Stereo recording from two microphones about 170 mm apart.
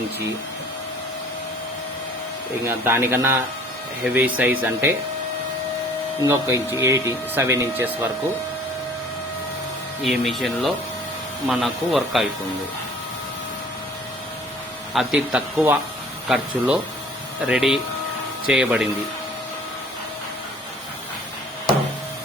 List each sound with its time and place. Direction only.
2.6 s speech: 15° right (ahead or behind)
6.2 s speech: 15° right (ahead or behind)
10.0 s speech: centre (ahead or behind)
14.9 s speech: 5° right (ahead or behind)